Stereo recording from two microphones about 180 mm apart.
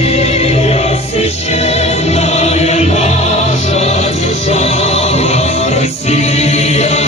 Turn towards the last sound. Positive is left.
turn(degrees=35)  # may be behind; listen again after turning